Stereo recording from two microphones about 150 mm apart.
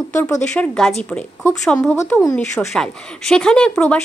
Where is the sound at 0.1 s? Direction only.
20° left (ahead or behind).